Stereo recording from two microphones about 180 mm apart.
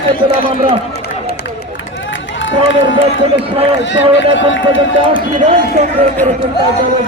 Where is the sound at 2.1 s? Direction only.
90° left.